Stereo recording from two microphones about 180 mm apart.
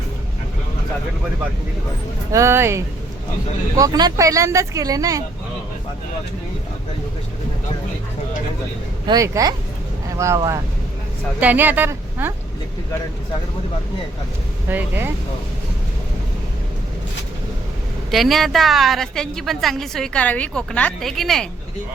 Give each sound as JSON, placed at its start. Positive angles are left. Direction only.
{"t": 2.3, "sound": "speech", "side_deg": -15}
{"t": 9.0, "sound": "speech", "side_deg": -20}
{"t": 14.7, "sound": "speech", "side_deg": -10}
{"t": 18.1, "sound": "a woman's voice", "side_deg": 0}